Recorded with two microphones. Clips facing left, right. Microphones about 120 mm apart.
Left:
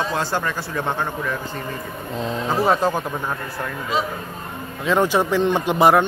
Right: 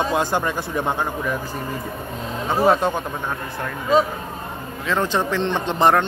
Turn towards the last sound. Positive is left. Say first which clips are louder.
# left 2 dB
turn(degrees=10)  # may be behind; listen again after turning